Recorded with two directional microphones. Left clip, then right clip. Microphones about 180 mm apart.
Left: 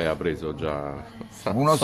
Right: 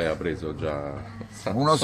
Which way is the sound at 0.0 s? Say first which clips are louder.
Left 1 dB; 10° left (ahead or behind).